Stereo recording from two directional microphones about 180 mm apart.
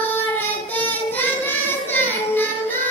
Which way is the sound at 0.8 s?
10° left (ahead or behind).